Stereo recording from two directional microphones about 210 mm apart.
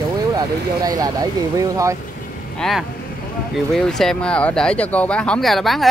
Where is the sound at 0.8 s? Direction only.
15° right (ahead or behind).